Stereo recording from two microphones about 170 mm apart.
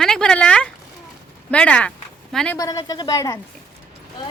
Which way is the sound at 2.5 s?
20° left (ahead or behind).